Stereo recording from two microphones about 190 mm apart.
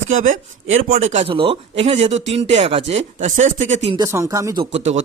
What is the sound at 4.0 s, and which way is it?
Speech, 15° right (ahead or behind).